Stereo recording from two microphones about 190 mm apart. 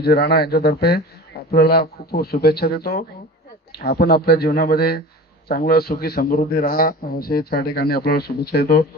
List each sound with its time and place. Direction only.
0.0 s a man's voice: 55° left (ahead or behind)